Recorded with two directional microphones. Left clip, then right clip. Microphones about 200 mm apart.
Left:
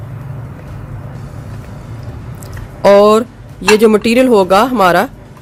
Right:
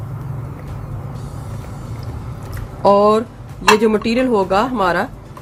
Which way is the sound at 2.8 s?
45° left (ahead or behind).